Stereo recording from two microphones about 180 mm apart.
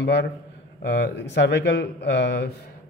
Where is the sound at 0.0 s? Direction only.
70° left (ahead or behind).